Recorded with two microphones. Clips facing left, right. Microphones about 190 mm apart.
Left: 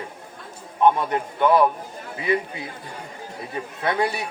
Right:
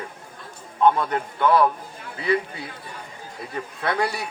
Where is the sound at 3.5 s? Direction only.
20° left (ahead or behind).